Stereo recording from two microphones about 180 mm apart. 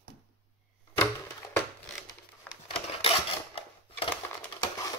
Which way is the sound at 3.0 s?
30° left (ahead or behind).